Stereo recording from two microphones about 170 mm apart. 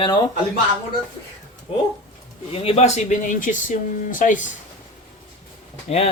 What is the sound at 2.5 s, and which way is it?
Speech, 35° left (ahead or behind).